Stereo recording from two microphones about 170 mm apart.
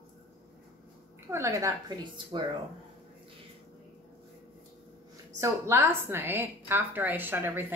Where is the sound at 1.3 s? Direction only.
15° right (ahead or behind).